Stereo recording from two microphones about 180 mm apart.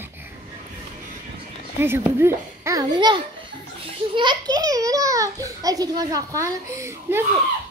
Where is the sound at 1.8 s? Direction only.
15° right (ahead or behind).